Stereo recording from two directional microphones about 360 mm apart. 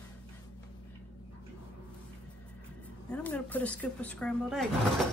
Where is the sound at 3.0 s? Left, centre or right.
Centre.